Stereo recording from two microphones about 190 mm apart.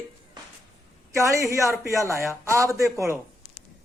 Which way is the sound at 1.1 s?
15° right (ahead or behind).